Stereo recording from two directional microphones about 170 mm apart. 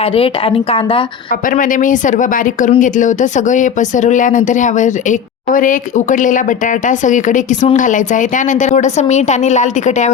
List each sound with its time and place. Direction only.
0.0 s a woman's voice: 35° left (ahead or behind)
1.5 s speech: 50° left (ahead or behind)